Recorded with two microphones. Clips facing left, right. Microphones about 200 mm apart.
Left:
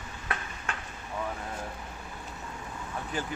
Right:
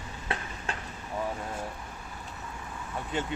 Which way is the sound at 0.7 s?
35° right (ahead or behind).